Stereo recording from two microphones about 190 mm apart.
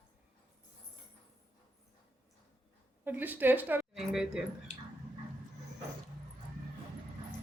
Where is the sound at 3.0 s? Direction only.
10° right (ahead or behind).